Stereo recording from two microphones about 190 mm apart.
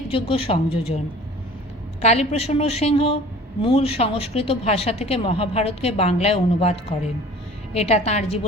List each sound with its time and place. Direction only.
0.1 s a woman's voice: 30° left (ahead or behind)
2.0 s speech: 35° left (ahead or behind)